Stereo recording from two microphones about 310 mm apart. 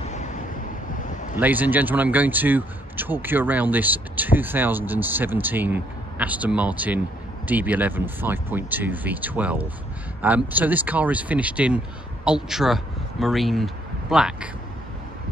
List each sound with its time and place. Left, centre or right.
0.0 s waves: left
1.0 s a sound: left
1.4 s a man's voice: centre